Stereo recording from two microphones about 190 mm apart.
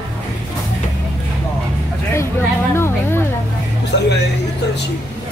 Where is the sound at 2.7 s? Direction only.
10° left (ahead or behind).